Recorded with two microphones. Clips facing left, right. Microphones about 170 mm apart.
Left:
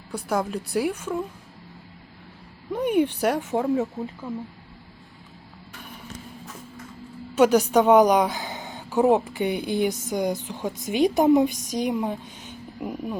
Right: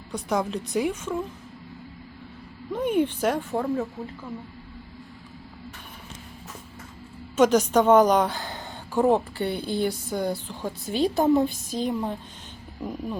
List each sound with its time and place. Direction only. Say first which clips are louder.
0.1 s a woman's voice: even; 5° left (ahead or behind)
2.7 s a woman's voice: left 2 dB; 15° left (ahead or behind)
7.3 s a woman's voice: left 1 dB; 10° left (ahead or behind)